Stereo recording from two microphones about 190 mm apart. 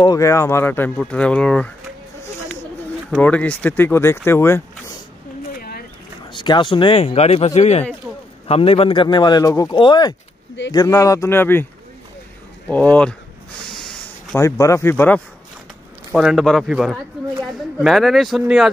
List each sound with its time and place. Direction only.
0.0 s speech: 20° left (ahead or behind)
3.2 s speech: 5° left (ahead or behind)
5.6 s boat: 50° left (ahead or behind)
6.3 s speech: 25° left (ahead or behind)
12.6 s speech: 10° left (ahead or behind)
13.7 s snort: centre (ahead or behind)
14.3 s speech: 15° left (ahead or behind)
16.1 s a man's voice: centre (ahead or behind)